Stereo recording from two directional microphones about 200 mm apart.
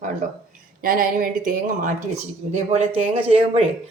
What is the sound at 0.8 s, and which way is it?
A woman's voice, 45° right (ahead or behind).